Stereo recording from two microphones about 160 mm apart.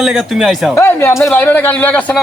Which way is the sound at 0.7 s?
15° left (ahead or behind).